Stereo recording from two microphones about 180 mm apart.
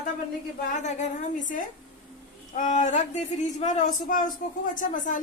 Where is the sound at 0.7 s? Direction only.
45° left (ahead or behind).